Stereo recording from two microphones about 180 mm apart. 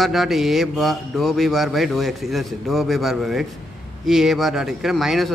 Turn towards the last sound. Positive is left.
turn(degrees=0)  # may be behind; listen again after turning